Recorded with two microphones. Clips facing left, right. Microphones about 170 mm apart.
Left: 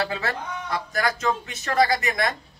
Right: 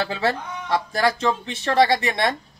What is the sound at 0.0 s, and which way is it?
Speech, 30° right (ahead or behind).